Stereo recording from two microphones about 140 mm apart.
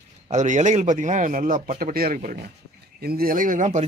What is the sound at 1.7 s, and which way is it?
Speech, 90° right.